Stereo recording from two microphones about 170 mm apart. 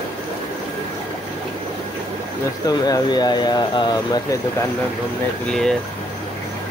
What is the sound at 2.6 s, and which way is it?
Speech, 20° left (ahead or behind).